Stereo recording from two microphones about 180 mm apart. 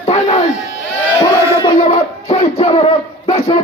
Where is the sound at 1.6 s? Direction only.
30° left (ahead or behind).